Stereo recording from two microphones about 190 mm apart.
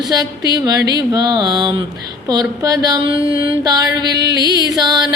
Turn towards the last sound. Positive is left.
turn(degrees=-20)  # may be behind; listen again after turning